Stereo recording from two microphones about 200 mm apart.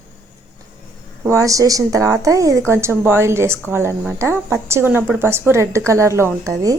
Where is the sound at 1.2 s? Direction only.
15° right (ahead or behind).